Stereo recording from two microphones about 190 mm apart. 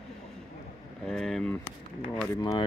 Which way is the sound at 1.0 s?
5° left (ahead or behind).